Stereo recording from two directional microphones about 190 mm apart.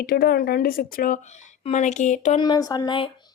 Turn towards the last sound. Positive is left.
turn(degrees=25)  # may be behind; listen again after turning